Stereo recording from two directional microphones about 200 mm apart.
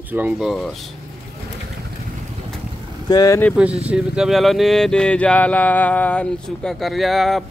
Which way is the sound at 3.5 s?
5° right (ahead or behind).